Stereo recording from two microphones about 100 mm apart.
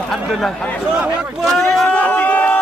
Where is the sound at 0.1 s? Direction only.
Centre (ahead or behind).